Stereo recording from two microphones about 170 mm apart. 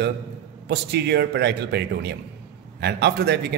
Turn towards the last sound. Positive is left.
turn(degrees=-75)  # may be behind; listen again after turning